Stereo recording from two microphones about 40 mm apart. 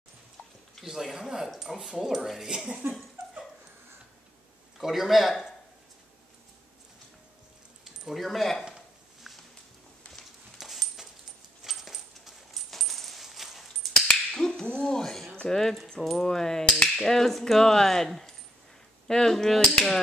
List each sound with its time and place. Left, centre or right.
0.8 s speech: centre
4.7 s a man's voice: centre
8.1 s a man's voice: centre
9.3 s a sound: centre
10.6 s a sound: centre
11.6 s coin: centre
14.0 s finger snapping: left
15.5 s speech: centre
19.6 s hammer: left